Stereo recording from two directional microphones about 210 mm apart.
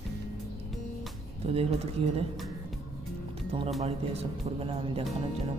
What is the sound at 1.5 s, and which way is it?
Speech, 30° right (ahead or behind).